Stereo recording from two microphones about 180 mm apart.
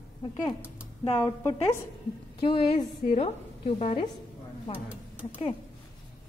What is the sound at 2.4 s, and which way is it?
Speech, 25° left (ahead or behind).